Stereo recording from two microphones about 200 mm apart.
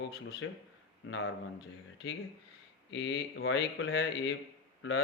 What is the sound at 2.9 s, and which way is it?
Speech, 65° left (ahead or behind).